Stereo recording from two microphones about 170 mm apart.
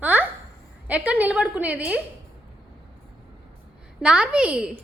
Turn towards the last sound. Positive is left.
turn(degrees=-5)  # may be behind; listen again after turning